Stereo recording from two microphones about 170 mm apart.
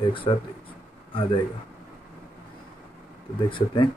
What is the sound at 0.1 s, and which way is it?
Speech, 30° left (ahead or behind).